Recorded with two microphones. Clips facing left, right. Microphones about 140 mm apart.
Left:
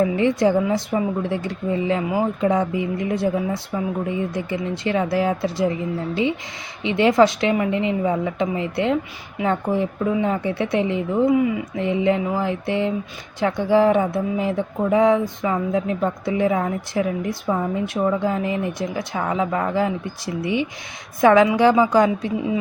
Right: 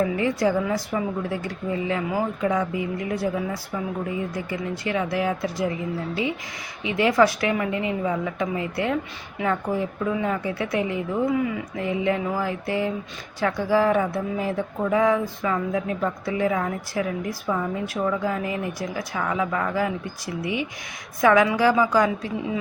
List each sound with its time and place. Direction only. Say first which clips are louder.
0.2 s speech: left 4 dB; 25° left (ahead or behind)